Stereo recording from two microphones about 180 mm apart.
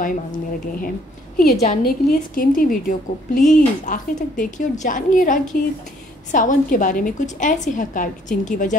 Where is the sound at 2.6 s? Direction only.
50° left (ahead or behind).